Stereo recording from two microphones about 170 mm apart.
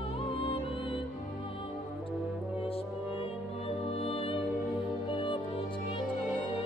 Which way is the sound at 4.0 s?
35° left (ahead or behind).